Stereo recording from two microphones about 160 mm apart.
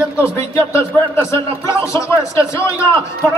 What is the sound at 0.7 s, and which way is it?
A man's voice, 15° left (ahead or behind).